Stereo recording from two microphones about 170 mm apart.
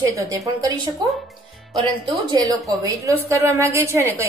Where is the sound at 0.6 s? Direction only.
20° right (ahead or behind).